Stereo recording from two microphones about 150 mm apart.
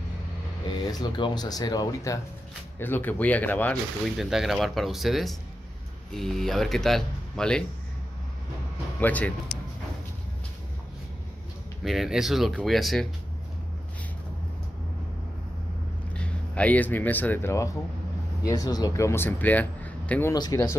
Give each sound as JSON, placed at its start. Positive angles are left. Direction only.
{"t": 0.9, "sound": "speech", "side_deg": 30}
{"t": 2.8, "sound": "speech", "side_deg": 15}
{"t": 4.2, "sound": "speech", "side_deg": 0}
{"t": 9.0, "sound": "speech", "side_deg": 10}
{"t": 11.8, "sound": "speech", "side_deg": 0}
{"t": 16.1, "sound": "speech", "side_deg": 10}
{"t": 20.3, "sound": "speech", "side_deg": 25}